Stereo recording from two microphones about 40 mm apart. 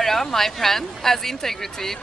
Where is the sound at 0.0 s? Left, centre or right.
Centre.